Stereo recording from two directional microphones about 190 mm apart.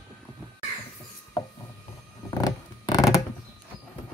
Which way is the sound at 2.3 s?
20° left (ahead or behind).